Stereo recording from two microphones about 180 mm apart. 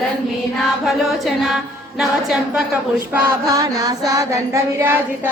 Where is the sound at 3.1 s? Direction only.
20° right (ahead or behind).